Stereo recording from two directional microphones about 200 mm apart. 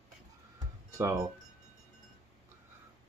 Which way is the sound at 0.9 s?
15° right (ahead or behind).